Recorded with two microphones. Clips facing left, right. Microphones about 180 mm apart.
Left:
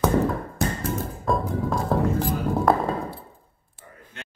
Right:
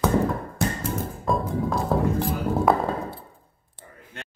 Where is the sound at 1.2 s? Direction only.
Centre (ahead or behind).